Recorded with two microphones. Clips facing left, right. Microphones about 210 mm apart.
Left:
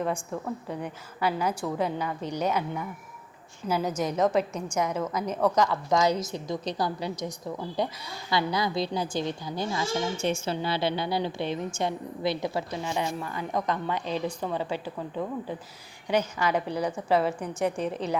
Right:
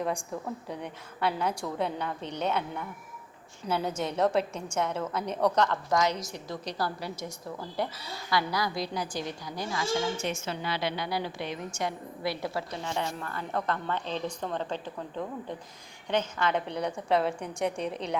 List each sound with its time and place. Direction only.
0.0 s a woman's voice: centre (ahead or behind)
6.1 s a woman's voice: 25° left (ahead or behind); by 18.2 s 5° left (ahead or behind)